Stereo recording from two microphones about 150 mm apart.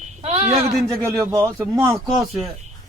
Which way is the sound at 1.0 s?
20° right (ahead or behind).